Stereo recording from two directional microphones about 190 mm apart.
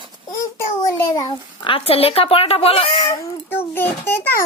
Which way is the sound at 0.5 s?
15° left (ahead or behind).